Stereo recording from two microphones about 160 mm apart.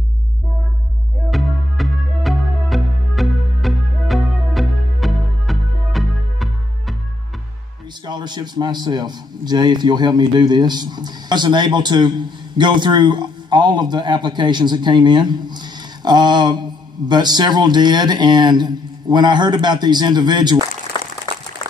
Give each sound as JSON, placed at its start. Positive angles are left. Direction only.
{"t": 1.3, "sound": "music", "side_deg": 0}
{"t": 8.0, "sound": "a man's voice", "side_deg": -25}
{"t": 21.3, "sound": "a sound", "side_deg": 35}